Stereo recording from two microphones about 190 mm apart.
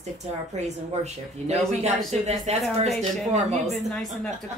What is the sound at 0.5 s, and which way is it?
Speech, 35° right (ahead or behind).